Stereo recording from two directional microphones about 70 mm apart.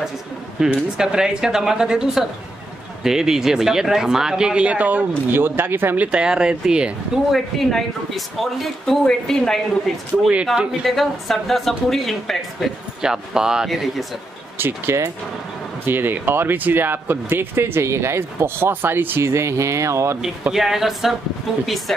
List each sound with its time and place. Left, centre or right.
0.6 s speech: centre; by 6.0 s right
6.1 s speech: centre
7.3 s speech: centre
10.3 s speech: centre
13.0 s speech: centre
14.6 s speech: right
19.2 s speech: right
20.5 s speech: centre